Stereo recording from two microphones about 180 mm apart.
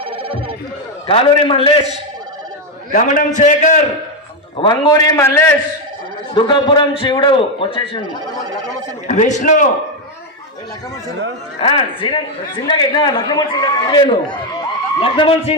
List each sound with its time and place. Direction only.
0.0 s music: 30° right (ahead or behind)
1.0 s a man's voice: 30° left (ahead or behind)
2.9 s a man's voice: 45° left (ahead or behind)
4.5 s a man's voice: 25° left (ahead or behind)
6.3 s a man's voice: 25° left (ahead or behind)
9.0 s a man's voice: 40° left (ahead or behind)
11.6 s a man's voice: 30° left (ahead or behind)